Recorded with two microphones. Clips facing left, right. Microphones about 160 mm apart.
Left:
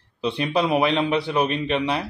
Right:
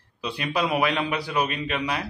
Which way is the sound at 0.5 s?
25° left (ahead or behind).